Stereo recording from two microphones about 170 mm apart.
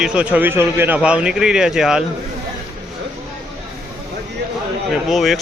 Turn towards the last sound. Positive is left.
turn(degrees=0)  # may be behind; listen again after turning